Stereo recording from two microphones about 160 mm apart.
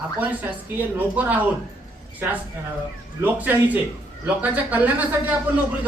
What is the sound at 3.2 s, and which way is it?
A woman's voice, 10° right (ahead or behind).